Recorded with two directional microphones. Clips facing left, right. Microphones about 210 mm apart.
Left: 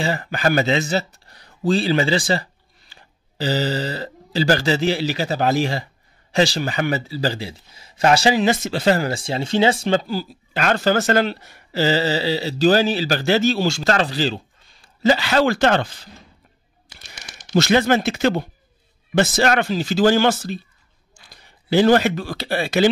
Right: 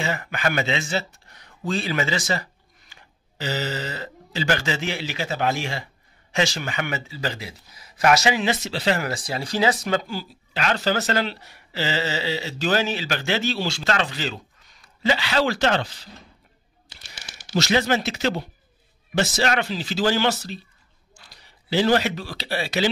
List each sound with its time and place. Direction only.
0.0 s speech: 35° left (ahead or behind)
9.0 s speech: 25° left (ahead or behind)
15.0 s speech: 40° left (ahead or behind)
17.6 s speech: 55° left (ahead or behind)